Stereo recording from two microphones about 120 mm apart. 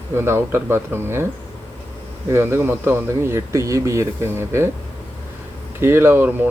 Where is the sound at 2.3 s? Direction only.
20° right (ahead or behind).